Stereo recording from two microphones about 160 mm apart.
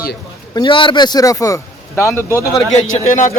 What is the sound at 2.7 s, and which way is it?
Speech, 45° left (ahead or behind).